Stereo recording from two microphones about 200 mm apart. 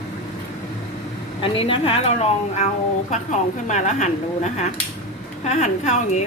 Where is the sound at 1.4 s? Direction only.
25° left (ahead or behind).